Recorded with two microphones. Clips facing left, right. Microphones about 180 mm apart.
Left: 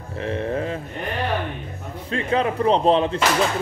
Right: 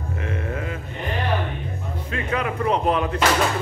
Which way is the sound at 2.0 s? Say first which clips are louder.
Left 4 dB; 30° left (ahead or behind).